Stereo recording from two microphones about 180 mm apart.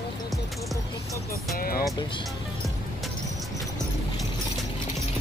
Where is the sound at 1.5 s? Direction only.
55° left (ahead or behind).